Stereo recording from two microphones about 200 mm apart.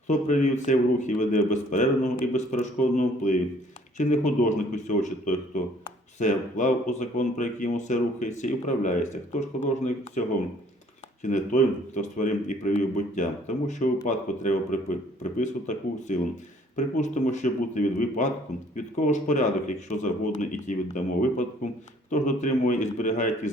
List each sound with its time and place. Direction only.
0.1 s speech: 35° left (ahead or behind)